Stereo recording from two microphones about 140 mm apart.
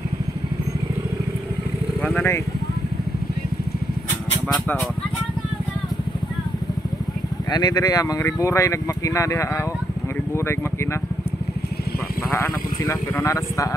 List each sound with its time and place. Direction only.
2.0 s vehicle: 5° left (ahead or behind)
4.5 s speech: 10° left (ahead or behind)
7.5 s speech: 30° left (ahead or behind)
12.4 s speech: 15° left (ahead or behind)